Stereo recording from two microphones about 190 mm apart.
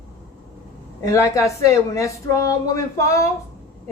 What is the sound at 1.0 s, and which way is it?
A woman's voice, 15° left (ahead or behind).